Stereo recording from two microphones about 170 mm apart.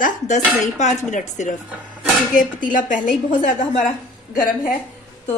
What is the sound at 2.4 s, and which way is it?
A woman's voice, 50° left (ahead or behind).